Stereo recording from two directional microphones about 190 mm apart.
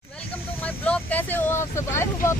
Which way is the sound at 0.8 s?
10° left (ahead or behind).